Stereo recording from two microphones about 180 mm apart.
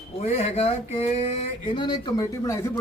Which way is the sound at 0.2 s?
35° left (ahead or behind).